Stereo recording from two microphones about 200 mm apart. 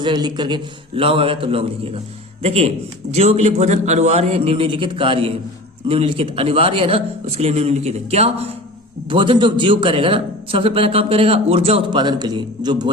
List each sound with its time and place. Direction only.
0.0 s a man's voice: 20° right (ahead or behind)